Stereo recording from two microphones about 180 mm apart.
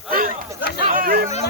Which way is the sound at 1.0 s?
55° right (ahead or behind).